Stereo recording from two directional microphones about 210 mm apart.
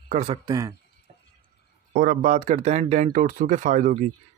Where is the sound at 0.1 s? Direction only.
30° right (ahead or behind).